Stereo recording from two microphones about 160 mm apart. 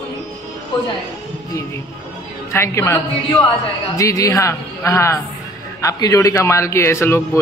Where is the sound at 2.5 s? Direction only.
15° left (ahead or behind).